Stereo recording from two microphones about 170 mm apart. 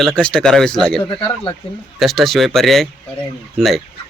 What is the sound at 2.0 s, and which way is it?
Speech, centre (ahead or behind).